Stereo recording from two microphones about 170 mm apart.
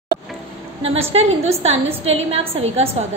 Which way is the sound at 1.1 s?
40° right (ahead or behind).